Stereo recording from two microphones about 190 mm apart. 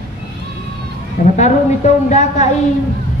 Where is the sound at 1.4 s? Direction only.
40° left (ahead or behind).